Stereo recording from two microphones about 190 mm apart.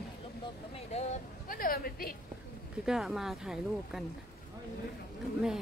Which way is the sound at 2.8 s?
Centre (ahead or behind).